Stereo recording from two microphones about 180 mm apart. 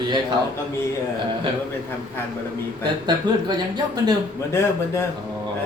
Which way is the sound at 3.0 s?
25° right (ahead or behind).